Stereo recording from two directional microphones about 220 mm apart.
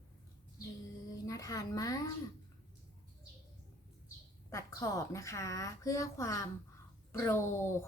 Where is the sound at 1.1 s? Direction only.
15° left (ahead or behind).